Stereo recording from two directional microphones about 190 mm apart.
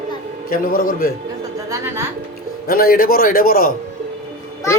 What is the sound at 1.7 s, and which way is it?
Speech, 15° right (ahead or behind).